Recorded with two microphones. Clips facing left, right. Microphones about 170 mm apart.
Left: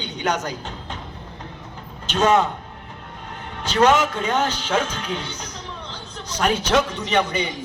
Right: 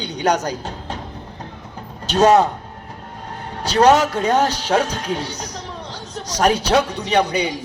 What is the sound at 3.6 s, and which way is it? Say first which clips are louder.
A man's voice: right 3 dB; 40° right (ahead or behind).